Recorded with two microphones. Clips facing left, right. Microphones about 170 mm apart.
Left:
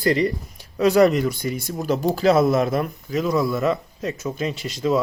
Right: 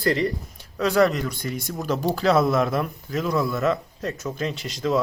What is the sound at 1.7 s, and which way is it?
Speech, 30° left (ahead or behind).